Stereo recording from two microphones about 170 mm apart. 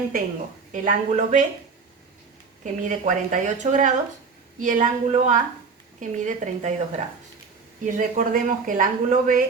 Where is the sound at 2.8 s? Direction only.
45° right (ahead or behind).